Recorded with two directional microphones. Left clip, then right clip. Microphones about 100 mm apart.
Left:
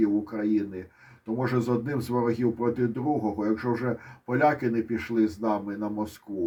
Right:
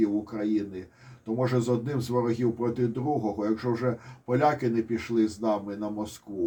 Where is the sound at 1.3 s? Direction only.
35° left (ahead or behind).